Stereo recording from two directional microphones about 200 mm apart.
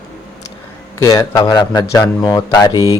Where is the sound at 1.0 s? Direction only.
15° left (ahead or behind).